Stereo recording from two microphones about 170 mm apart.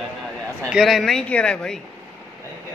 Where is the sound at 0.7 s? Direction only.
Centre (ahead or behind).